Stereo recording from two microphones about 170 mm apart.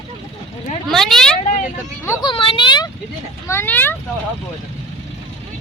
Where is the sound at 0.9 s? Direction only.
Centre (ahead or behind).